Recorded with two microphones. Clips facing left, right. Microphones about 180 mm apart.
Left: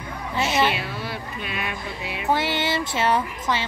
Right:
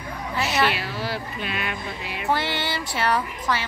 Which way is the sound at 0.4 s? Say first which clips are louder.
Left 1 dB; 20° left (ahead or behind).